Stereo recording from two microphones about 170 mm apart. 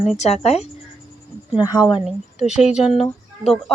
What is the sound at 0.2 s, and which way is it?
Speech, 40° left (ahead or behind).